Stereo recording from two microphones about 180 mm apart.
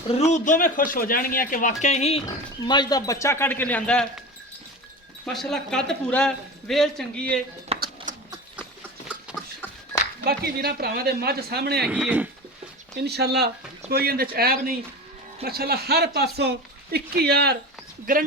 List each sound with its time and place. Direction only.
0.1 s speech: 40° left (ahead or behind)
2.2 s speech: 20° left (ahead or behind); by 4.0 s 5° left (ahead or behind)
5.2 s a woman's voice: centre (ahead or behind)
7.7 s a sound: 35° right (ahead or behind)
8.1 s horse: 45° right (ahead or behind)
9.0 s a sound: 5° right (ahead or behind)
10.2 s speech: 60° right (ahead or behind)
11.9 s speech: 10° right (ahead or behind)
13.0 s speech: 65° right (ahead or behind)
18.0 s speech: 50° right (ahead or behind)